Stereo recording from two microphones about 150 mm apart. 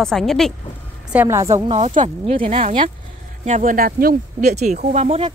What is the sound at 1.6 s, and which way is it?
Speech, 45° right (ahead or behind).